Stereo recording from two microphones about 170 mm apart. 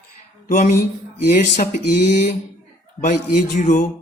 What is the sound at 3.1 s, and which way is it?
Speech, 55° left (ahead or behind).